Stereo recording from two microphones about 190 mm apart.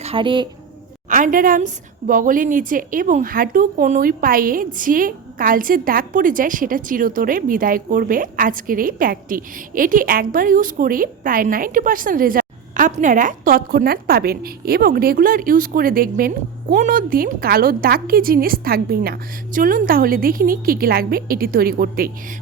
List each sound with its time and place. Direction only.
0.0 s speech: 30° right (ahead or behind)
1.1 s a woman's voice: 45° right (ahead or behind)